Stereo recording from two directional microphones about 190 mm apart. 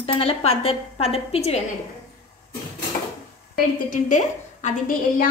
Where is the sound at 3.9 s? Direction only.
40° left (ahead or behind).